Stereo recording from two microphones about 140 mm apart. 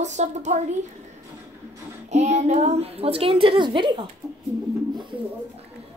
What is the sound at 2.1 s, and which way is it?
A child's voice, 55° right (ahead or behind).